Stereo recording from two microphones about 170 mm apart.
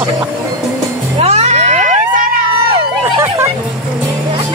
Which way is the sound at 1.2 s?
40° right (ahead or behind).